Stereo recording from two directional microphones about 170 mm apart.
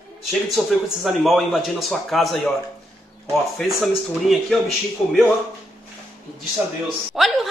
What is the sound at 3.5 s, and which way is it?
A man's voice, centre (ahead or behind).